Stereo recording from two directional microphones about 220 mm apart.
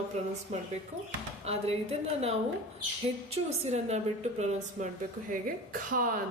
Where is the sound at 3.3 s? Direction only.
30° right (ahead or behind).